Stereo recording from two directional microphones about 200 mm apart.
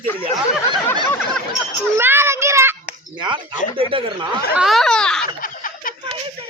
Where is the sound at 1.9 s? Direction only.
10° right (ahead or behind).